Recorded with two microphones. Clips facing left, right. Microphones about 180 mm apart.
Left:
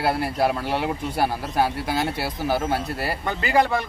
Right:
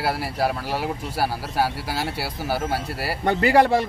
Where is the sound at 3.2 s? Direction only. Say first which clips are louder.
Right 5 dB; 70° right (ahead or behind).